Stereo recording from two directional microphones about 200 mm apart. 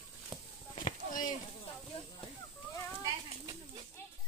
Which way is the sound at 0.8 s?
40° left (ahead or behind).